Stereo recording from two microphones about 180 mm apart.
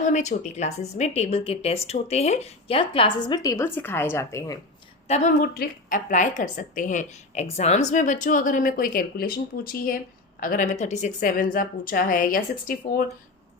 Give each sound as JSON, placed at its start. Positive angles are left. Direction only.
{"t": 0.0, "sound": "a woman's voice", "side_deg": 40}
{"t": 5.0, "sound": "a woman's voice", "side_deg": 40}